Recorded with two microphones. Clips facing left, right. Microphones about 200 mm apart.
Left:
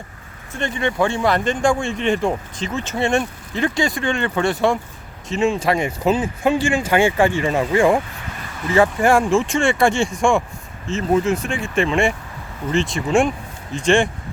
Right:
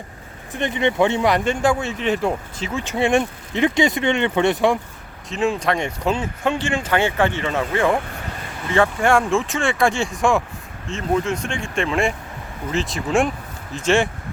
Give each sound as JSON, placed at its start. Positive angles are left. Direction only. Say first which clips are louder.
{"t": 0.5, "sound": "speech", "louder": "right 2 dB", "side_deg": -20}
{"t": 5.3, "sound": "speech", "louder": "left 2 dB", "side_deg": 0}